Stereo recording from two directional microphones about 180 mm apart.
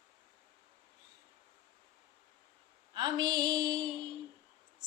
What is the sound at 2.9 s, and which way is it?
A woman's voice, 25° right (ahead or behind).